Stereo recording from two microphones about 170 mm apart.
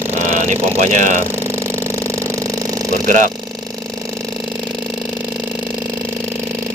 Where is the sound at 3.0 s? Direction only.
50° right (ahead or behind).